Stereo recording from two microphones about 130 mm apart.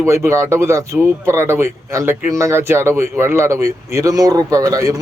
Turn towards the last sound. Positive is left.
turn(degrees=-25)  # may be behind; listen again after turning